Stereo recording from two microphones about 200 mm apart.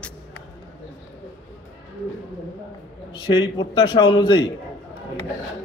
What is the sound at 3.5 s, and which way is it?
Speech, 25° left (ahead or behind).